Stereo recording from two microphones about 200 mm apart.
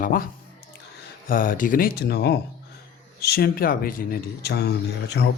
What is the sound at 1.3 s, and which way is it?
A man's voice, 45° left (ahead or behind).